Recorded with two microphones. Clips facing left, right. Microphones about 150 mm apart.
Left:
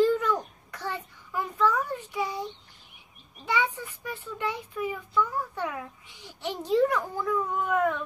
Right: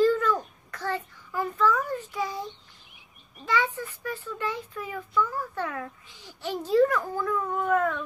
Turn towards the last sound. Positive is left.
turn(degrees=15)  # may be behind; listen again after turning